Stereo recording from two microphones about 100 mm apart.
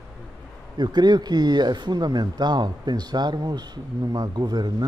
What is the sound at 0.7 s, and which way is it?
Speech, 45° right (ahead or behind).